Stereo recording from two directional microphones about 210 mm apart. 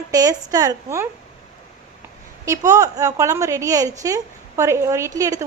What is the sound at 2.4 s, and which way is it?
A woman's voice, 15° right (ahead or behind).